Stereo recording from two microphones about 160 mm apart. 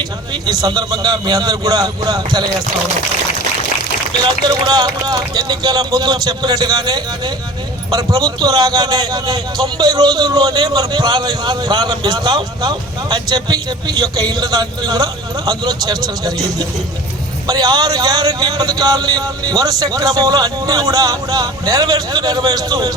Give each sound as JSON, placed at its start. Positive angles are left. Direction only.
{"t": 0.0, "sound": "a man's voice", "side_deg": -25}
{"t": 4.4, "sound": "a man's voice", "side_deg": -25}